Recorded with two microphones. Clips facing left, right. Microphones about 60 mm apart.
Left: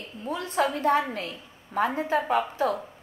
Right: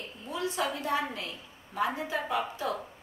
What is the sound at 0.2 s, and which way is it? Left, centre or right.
A woman's voice, left.